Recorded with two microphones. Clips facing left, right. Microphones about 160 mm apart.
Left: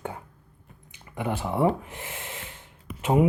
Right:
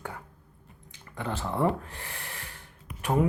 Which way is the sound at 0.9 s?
15° left (ahead or behind).